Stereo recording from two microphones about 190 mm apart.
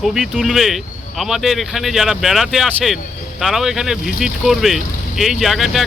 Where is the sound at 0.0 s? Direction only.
Centre (ahead or behind).